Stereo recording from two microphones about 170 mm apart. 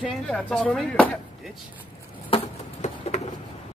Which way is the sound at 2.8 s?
40° left (ahead or behind).